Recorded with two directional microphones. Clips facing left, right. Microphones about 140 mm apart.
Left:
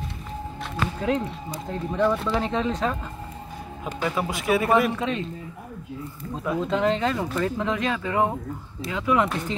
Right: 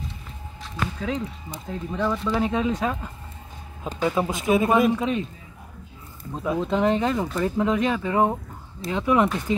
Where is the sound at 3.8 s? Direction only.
25° right (ahead or behind).